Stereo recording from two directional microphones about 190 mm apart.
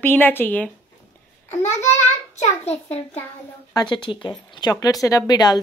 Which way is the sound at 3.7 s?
25° left (ahead or behind).